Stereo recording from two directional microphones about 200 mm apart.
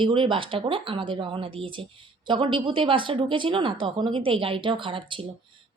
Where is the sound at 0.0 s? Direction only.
25° right (ahead or behind).